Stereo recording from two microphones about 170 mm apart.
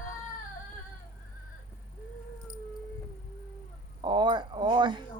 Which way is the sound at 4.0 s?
25° right (ahead or behind).